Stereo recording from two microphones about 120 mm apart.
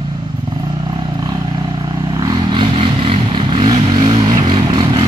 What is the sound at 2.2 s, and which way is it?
Vehicle, 40° right (ahead or behind).